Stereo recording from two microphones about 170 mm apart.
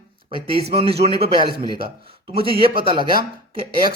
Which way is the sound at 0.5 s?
35° right (ahead or behind).